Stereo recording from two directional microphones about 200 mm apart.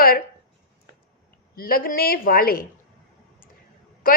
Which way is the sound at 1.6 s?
50° left (ahead or behind).